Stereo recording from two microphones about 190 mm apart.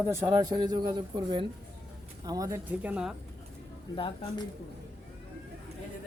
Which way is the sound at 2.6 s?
10° right (ahead or behind).